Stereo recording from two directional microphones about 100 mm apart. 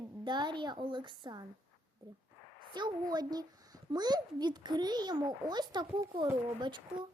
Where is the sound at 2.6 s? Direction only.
50° right (ahead or behind).